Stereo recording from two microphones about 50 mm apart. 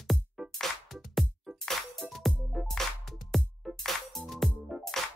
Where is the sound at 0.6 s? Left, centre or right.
Centre.